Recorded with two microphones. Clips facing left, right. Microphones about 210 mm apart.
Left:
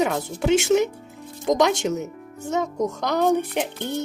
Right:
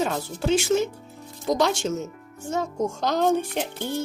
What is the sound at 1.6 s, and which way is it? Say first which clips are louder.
Speech: left 2 dB; 20° left (ahead or behind).